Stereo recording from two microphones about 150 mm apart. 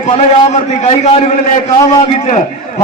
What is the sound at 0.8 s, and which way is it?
Speech, 45° left (ahead or behind).